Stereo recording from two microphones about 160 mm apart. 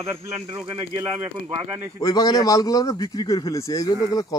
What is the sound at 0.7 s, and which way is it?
Speech, 30° right (ahead or behind).